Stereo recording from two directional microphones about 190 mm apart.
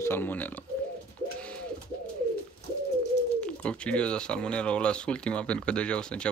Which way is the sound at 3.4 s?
5° left (ahead or behind).